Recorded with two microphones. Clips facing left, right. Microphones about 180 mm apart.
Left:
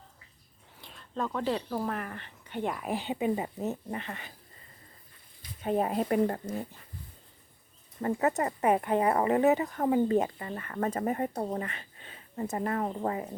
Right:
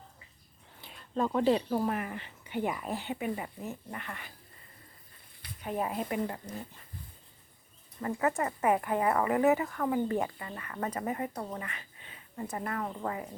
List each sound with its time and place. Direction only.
0.8 s a sound: 5° right (ahead or behind)
1.2 s speech: 20° right (ahead or behind)
1.8 s speech: 10° right (ahead or behind)
2.8 s speech: 15° left (ahead or behind)
5.6 s speech: 30° left (ahead or behind)
8.4 s speech: 25° left (ahead or behind)